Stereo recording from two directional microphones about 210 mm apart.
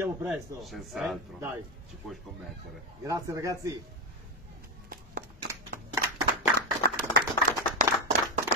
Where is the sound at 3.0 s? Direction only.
15° right (ahead or behind).